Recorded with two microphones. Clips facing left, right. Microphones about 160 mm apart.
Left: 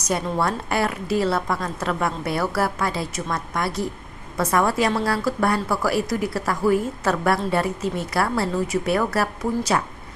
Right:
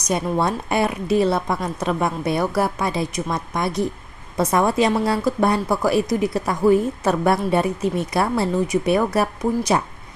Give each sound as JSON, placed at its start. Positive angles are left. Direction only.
{"t": 0.0, "sound": "a woman's voice", "side_deg": -20}